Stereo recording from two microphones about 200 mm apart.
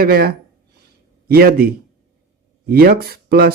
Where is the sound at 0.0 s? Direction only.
50° right (ahead or behind).